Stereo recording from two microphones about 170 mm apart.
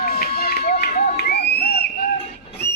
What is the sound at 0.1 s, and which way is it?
Crowd, 65° left (ahead or behind).